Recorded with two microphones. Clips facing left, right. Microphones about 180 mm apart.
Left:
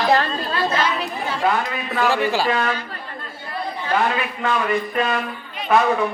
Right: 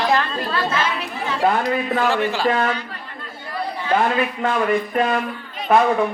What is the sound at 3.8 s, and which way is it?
Speech, 50° right (ahead or behind).